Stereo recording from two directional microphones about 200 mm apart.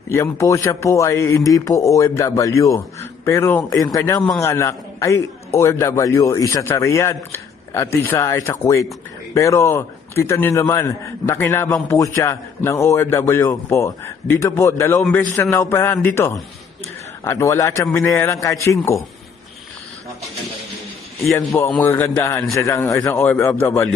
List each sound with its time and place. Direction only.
0.1 s a man's voice: 15° left (ahead or behind)
21.5 s a man's voice: 10° left (ahead or behind)